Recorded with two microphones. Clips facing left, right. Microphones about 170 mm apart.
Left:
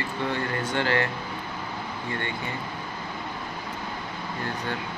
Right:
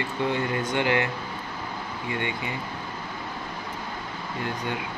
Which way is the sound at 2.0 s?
15° right (ahead or behind).